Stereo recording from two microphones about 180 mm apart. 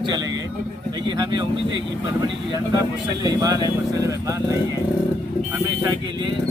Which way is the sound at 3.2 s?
20° right (ahead or behind).